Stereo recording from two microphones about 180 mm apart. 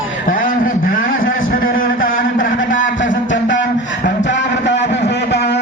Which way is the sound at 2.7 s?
90° left.